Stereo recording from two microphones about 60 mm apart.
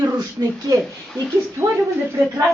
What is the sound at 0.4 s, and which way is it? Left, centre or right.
Speech, right.